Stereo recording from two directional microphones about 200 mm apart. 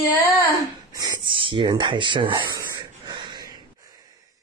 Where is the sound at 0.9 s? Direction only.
20° right (ahead or behind).